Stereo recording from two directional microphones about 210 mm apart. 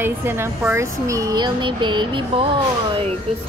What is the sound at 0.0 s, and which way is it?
Speech, 10° right (ahead or behind).